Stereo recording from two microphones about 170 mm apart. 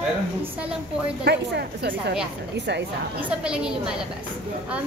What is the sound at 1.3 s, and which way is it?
Speech, 80° right.